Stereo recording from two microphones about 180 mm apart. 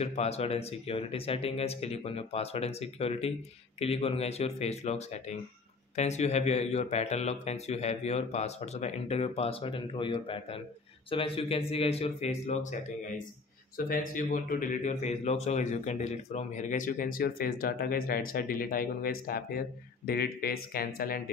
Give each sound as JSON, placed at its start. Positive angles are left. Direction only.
{"t": 0.0, "sound": "speech", "side_deg": 35}